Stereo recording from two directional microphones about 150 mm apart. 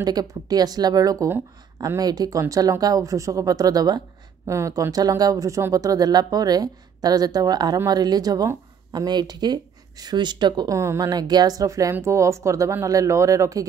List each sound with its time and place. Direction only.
0.0 s speech: 25° right (ahead or behind)